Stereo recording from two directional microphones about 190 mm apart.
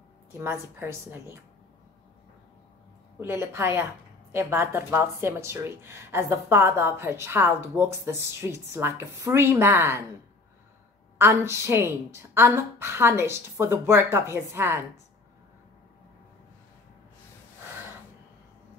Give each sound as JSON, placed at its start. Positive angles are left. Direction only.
{"t": 0.3, "sound": "a woman's voice", "side_deg": -15}
{"t": 3.2, "sound": "a woman's voice", "side_deg": -15}
{"t": 11.1, "sound": "a woman's voice", "side_deg": -15}